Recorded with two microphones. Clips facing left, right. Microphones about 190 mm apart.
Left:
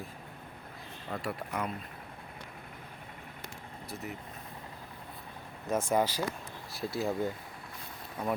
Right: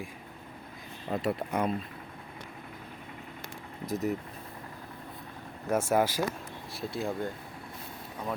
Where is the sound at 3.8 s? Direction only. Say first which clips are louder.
Right 11 dB; 40° right (ahead or behind).